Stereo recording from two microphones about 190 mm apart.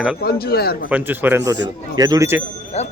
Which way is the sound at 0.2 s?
55° left (ahead or behind).